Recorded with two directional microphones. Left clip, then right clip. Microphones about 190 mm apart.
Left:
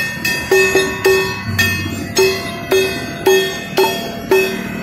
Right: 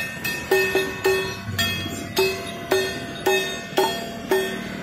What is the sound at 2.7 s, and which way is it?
Music, 40° right (ahead or behind).